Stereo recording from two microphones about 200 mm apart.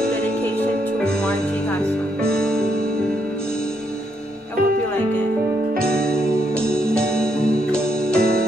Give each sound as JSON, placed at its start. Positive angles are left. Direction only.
{"t": 2.2, "sound": "music", "side_deg": 5}
{"t": 5.8, "sound": "music", "side_deg": 5}
{"t": 8.2, "sound": "music", "side_deg": -50}